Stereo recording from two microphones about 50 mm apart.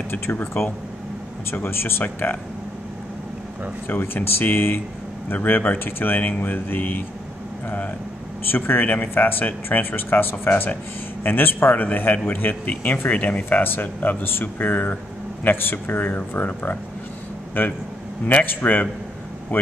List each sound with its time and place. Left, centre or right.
0.1 s speech: left
3.8 s speech: left
8.5 s speech: left